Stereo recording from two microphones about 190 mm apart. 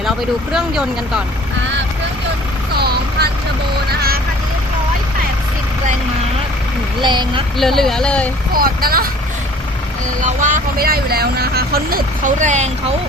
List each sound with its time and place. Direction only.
0.5 s speech: 5° right (ahead or behind)
2.7 s vehicle: 55° right (ahead or behind)
7.0 s speech: 25° right (ahead or behind)
7.6 s speech: centre (ahead or behind)
8.5 s speech: 50° right (ahead or behind)
10.2 s speech: 40° right (ahead or behind)